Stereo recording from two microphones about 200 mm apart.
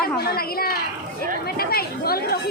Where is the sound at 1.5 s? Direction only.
50° left (ahead or behind).